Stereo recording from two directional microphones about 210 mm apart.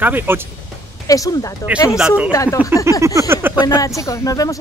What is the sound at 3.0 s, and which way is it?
Speech, 15° right (ahead or behind).